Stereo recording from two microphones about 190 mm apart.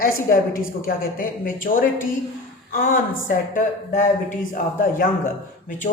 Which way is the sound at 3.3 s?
45° left (ahead or behind).